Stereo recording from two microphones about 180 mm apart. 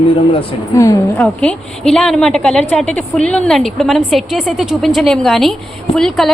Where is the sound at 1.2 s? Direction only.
Centre (ahead or behind).